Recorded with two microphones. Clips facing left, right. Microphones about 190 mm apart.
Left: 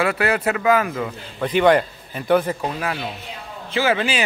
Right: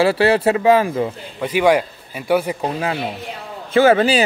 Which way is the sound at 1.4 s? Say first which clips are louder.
Even; 10° right (ahead or behind).